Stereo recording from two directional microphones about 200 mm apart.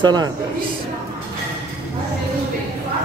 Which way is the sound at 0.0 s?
20° right (ahead or behind).